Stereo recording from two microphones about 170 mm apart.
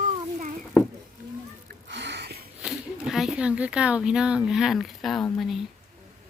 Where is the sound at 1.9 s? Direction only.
90° right; by 2.4 s 75° right (ahead or behind).